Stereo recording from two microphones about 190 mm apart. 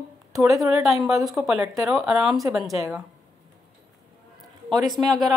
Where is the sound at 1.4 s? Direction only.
Centre (ahead or behind).